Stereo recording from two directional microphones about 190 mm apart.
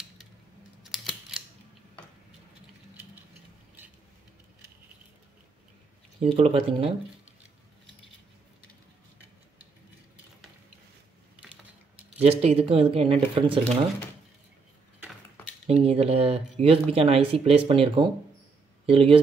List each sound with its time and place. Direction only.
0.9 s camera: centre (ahead or behind)
6.2 s speech: 30° right (ahead or behind)
12.0 s speech: 35° right (ahead or behind)
15.6 s speech: 35° right (ahead or behind)